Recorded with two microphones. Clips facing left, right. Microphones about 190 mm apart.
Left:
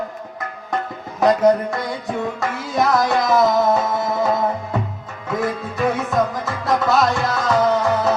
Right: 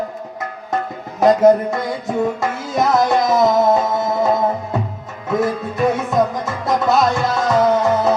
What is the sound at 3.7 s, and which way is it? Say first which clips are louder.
Music: right 2 dB; 20° right (ahead or behind).